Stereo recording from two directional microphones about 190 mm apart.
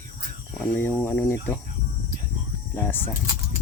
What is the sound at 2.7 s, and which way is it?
Speech, 10° left (ahead or behind).